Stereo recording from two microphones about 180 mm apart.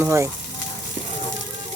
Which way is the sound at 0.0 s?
15° right (ahead or behind).